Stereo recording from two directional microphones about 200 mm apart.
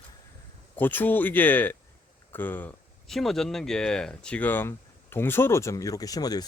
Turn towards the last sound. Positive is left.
turn(degrees=20)  # may be behind; listen again after turning